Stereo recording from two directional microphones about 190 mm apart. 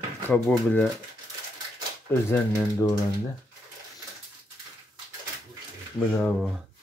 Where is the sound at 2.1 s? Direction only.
15° left (ahead or behind).